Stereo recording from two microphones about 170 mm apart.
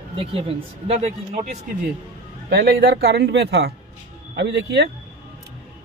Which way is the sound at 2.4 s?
75° right (ahead or behind).